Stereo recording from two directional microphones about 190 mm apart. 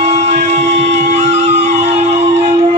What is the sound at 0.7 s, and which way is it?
Music, 35° right (ahead or behind).